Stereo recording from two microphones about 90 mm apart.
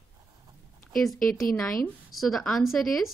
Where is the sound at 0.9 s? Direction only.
5° left (ahead or behind).